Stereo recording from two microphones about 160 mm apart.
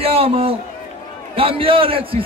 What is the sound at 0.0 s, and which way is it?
A man's voice, 40° right (ahead or behind).